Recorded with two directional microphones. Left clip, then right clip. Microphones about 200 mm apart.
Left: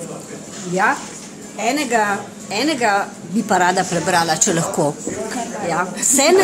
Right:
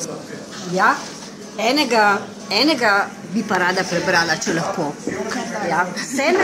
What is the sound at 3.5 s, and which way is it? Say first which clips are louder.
A woman's voice: left 3 dB; 50° left (ahead or behind).